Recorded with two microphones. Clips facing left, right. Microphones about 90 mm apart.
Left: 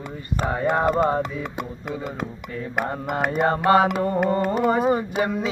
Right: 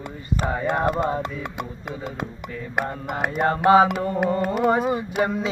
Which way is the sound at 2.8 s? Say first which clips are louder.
Left 2 dB; 50° left (ahead or behind).